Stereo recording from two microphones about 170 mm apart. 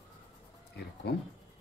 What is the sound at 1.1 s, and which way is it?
Speech, 75° left (ahead or behind).